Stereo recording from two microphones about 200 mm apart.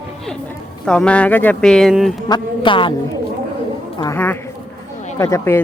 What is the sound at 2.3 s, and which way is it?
Speech, 25° left (ahead or behind).